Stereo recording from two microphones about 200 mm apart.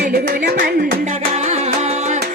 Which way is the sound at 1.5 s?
35° right (ahead or behind).